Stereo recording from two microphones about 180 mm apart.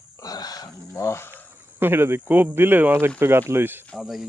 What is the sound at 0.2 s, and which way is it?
Wild animals, 20° left (ahead or behind).